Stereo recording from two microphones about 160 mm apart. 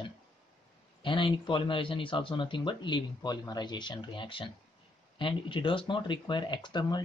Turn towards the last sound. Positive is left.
turn(degrees=25)  # may be behind; listen again after turning